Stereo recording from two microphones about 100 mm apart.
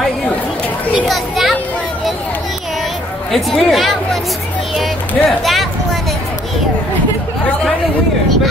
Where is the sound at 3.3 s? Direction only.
Centre (ahead or behind).